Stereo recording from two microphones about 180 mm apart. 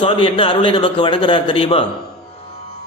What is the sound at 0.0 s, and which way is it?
A man's voice, 30° left (ahead or behind).